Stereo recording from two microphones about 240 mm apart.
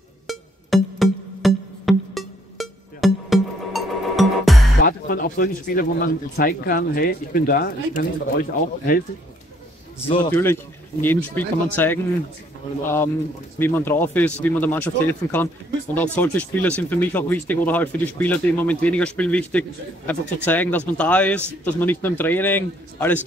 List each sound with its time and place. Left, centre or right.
0.3 s music: centre
4.8 s speech: left
10.0 s speech: left
10.3 s speech: centre
13.6 s speech: centre